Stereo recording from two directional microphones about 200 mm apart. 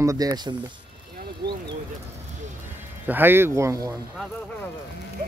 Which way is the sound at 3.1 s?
10° right (ahead or behind).